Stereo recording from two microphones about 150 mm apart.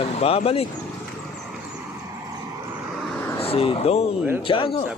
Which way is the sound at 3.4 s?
40° left (ahead or behind).